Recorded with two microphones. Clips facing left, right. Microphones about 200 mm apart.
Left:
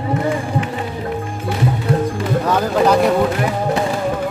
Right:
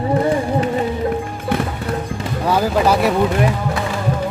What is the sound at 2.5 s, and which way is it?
Speech, 5° right (ahead or behind).